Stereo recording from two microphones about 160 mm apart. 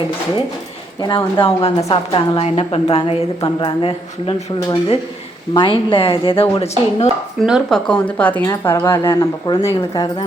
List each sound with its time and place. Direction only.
1.0 s a woman's voice: 30° left (ahead or behind)
7.4 s speech: 5° right (ahead or behind)
7.9 s speech: 10° left (ahead or behind)
8.4 s speech: 20° left (ahead or behind)